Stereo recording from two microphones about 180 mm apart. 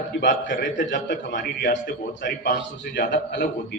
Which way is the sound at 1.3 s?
55° left (ahead or behind).